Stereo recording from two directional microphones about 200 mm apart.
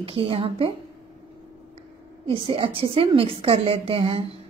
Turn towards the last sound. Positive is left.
turn(degrees=-25)  # may be behind; listen again after turning